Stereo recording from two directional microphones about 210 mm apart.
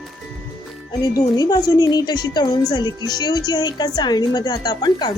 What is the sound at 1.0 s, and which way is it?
A woman's voice, 15° left (ahead or behind).